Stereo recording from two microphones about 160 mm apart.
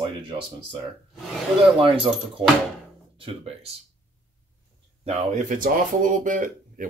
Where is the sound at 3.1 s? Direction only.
35° right (ahead or behind).